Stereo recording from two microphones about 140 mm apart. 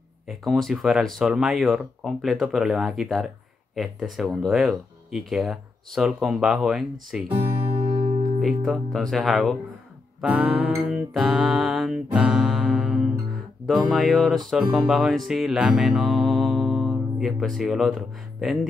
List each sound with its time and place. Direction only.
0.3 s speech: centre (ahead or behind)
7.9 s music: 40° right (ahead or behind)
8.4 s speech: centre (ahead or behind)
10.2 s music: 5° right (ahead or behind)
13.7 s speech: centre (ahead or behind)
14.6 s music: 10° right (ahead or behind)